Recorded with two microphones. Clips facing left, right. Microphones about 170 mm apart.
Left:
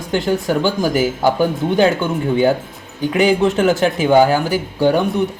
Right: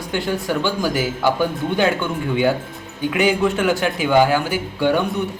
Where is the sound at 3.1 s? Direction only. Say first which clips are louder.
Left 4 dB; 35° left (ahead or behind).